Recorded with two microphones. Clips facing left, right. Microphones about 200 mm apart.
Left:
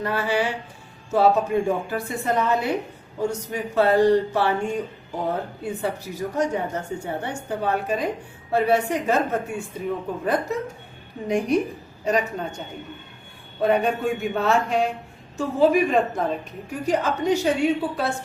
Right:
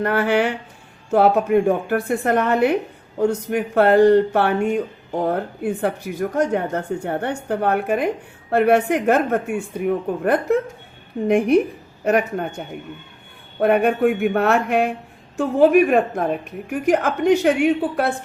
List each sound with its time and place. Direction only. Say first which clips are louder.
0.0 s speech: right 5 dB; 60° right (ahead or behind)